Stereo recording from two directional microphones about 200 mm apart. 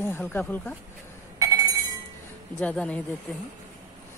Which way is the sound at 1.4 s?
15° right (ahead or behind).